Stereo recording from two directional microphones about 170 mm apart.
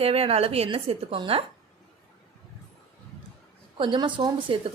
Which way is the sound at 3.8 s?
30° right (ahead or behind).